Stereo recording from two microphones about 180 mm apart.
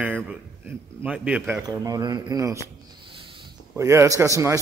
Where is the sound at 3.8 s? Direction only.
15° right (ahead or behind).